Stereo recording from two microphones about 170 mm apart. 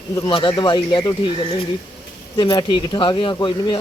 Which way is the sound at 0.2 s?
30° left (ahead or behind).